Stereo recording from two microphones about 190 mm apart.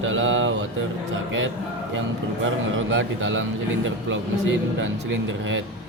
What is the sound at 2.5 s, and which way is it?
A man's voice, 90° right.